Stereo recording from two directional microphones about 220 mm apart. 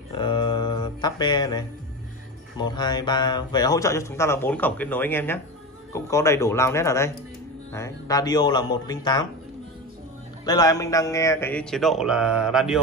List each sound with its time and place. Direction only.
0.1 s a sound: 20° left (ahead or behind)
2.6 s speech: 20° left (ahead or behind)
10.4 s speech: 15° left (ahead or behind); by 12.8 s 5° right (ahead or behind)